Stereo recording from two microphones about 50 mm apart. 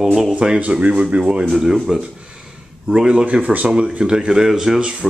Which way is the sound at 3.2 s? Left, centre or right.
Right.